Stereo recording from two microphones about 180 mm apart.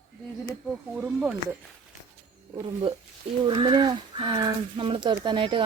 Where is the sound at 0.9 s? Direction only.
5° right (ahead or behind).